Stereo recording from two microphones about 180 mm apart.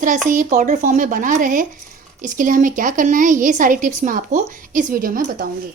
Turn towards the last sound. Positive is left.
turn(degrees=-50)  # may be behind; listen again after turning